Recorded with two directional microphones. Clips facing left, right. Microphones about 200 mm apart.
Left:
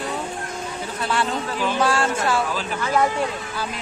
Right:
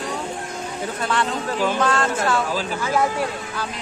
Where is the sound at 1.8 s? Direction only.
10° left (ahead or behind).